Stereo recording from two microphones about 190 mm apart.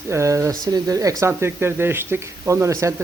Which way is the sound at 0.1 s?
15° right (ahead or behind).